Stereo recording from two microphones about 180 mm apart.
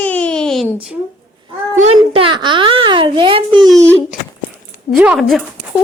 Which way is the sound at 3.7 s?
15° right (ahead or behind).